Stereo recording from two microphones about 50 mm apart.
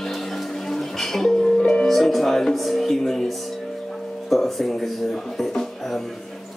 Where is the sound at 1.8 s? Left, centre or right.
Centre.